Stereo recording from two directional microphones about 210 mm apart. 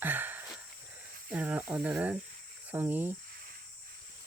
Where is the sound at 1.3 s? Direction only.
5° right (ahead or behind).